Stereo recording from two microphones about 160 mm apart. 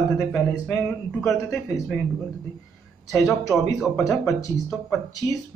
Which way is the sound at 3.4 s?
20° left (ahead or behind).